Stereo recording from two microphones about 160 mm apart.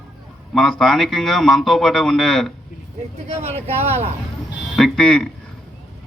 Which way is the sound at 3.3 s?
40° right (ahead or behind).